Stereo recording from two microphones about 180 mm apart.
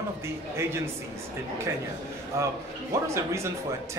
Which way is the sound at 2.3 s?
15° right (ahead or behind).